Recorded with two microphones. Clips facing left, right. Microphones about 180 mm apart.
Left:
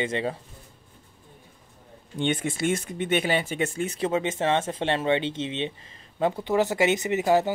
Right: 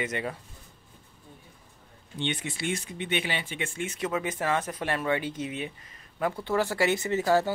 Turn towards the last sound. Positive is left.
turn(degrees=20)  # may be behind; listen again after turning